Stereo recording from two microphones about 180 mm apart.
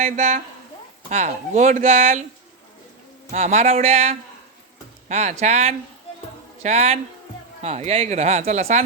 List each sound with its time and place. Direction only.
0.0 s speech: 40° right (ahead or behind)
3.3 s speech: 35° right (ahead or behind)